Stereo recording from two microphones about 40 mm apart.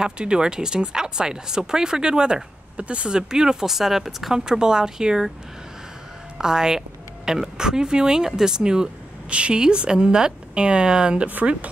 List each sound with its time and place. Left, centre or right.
0.0 s speech: right; by 4.4 s centre
4.5 s speech: centre
6.3 s speech: centre